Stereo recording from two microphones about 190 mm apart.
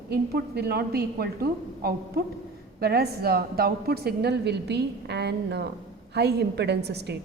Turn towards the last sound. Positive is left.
turn(degrees=-60)  # may be behind; listen again after turning